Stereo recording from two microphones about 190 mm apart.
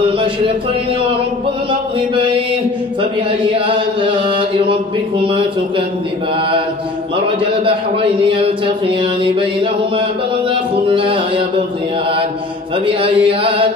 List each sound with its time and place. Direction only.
3.0 s speech: 30° right (ahead or behind)
7.6 s speech: 30° right (ahead or behind)
12.8 s speech: 30° right (ahead or behind)